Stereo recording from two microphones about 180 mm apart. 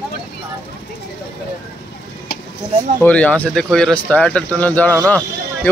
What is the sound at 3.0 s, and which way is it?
Speech, 5° left (ahead or behind).